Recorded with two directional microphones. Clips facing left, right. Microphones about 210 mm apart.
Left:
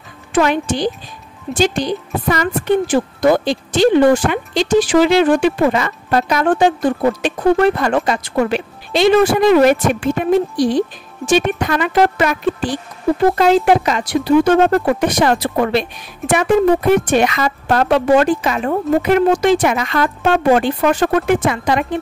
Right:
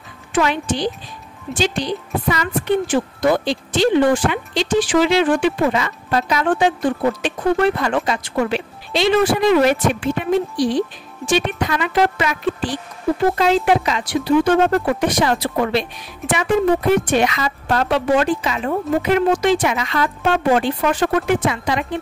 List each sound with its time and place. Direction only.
0.3 s a woman's voice: 45° left (ahead or behind)
17.1 s a woman's voice: 50° left (ahead or behind)